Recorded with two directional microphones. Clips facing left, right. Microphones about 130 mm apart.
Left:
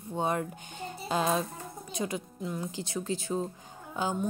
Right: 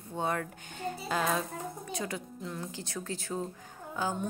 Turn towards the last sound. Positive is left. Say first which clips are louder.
# left 1 dB
turn(degrees=20)  # may be behind; listen again after turning